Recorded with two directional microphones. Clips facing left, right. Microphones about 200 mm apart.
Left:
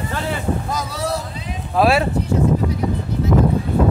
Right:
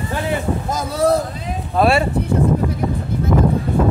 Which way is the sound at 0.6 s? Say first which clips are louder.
Right 7 dB; 50° right (ahead or behind).